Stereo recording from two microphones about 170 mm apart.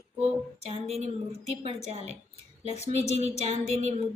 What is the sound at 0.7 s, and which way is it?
A woman's voice, 40° right (ahead or behind).